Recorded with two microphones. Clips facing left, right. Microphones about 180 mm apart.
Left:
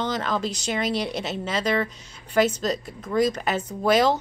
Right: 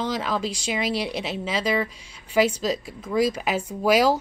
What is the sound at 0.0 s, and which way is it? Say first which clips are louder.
A woman's voice: even; 5° right (ahead or behind).